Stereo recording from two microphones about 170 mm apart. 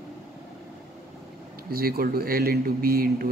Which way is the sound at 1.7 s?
60° right (ahead or behind).